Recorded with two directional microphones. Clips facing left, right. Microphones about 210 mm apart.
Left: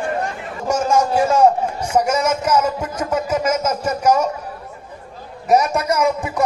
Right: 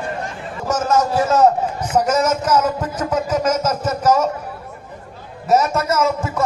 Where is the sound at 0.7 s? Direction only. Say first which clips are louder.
Left 1 dB; 10° left (ahead or behind).